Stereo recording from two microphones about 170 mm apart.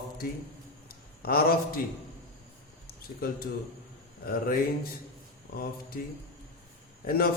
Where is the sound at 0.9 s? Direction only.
60° left (ahead or behind).